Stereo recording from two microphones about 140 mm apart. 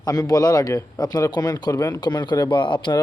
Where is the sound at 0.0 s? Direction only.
25° left (ahead or behind).